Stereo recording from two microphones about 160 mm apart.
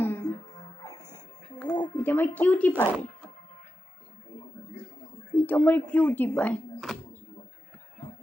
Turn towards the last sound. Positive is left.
turn(degrees=5)  # may be behind; listen again after turning